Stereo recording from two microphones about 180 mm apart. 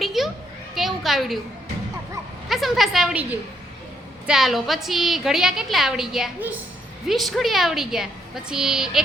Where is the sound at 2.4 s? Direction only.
Centre (ahead or behind).